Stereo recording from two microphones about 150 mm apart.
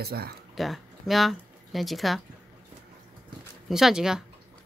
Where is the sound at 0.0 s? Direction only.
90° right.